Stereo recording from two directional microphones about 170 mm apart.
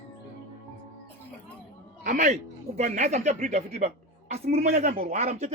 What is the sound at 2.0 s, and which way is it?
A man's voice, 50° right (ahead or behind).